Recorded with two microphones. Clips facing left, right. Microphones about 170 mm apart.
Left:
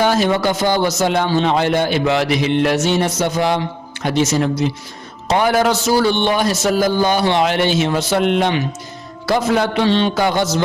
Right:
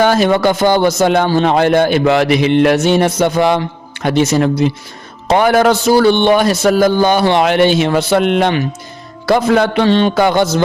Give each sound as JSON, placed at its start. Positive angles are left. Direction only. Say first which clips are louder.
{"t": 0.0, "sound": "speech", "louder": "right 4 dB", "side_deg": -60}